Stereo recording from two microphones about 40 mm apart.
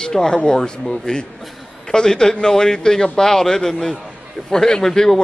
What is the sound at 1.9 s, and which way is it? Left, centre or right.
A man's voice, centre.